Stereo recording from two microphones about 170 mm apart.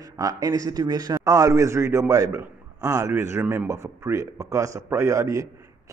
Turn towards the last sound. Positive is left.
turn(degrees=-20)  # may be behind; listen again after turning